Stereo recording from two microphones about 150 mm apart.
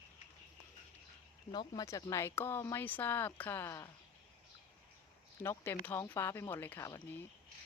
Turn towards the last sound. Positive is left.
turn(degrees=15)  # may be behind; listen again after turning